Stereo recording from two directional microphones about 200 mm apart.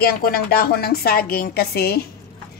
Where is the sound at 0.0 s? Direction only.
50° left (ahead or behind).